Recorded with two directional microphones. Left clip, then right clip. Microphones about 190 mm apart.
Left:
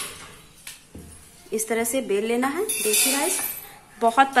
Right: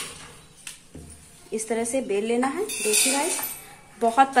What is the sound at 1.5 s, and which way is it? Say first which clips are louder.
Speech: left 2 dB; 10° left (ahead or behind).